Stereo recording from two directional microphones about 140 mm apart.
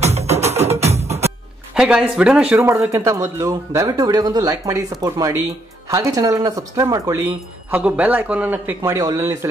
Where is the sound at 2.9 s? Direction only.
20° right (ahead or behind).